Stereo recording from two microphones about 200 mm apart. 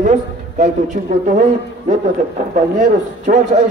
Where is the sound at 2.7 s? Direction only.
40° right (ahead or behind).